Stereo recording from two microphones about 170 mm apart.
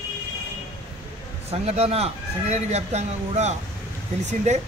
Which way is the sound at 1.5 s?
35° right (ahead or behind).